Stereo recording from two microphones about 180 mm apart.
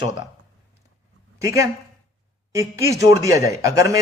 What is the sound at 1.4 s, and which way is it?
A man's voice, 15° right (ahead or behind).